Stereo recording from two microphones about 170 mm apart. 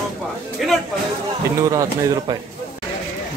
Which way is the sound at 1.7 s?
20° right (ahead or behind).